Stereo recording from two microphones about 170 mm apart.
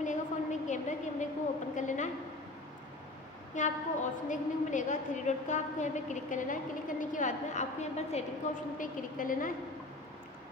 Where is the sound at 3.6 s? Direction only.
45° left (ahead or behind).